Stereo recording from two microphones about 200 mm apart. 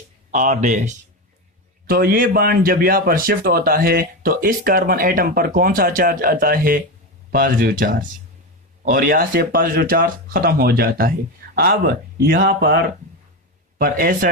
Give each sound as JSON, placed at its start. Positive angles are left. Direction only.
{"t": 0.3, "sound": "a man's voice", "side_deg": -40}